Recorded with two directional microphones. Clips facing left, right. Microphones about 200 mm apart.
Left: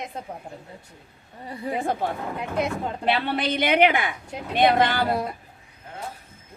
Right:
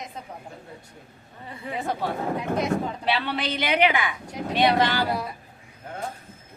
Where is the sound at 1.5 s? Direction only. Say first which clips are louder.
Left 4 dB; 35° left (ahead or behind).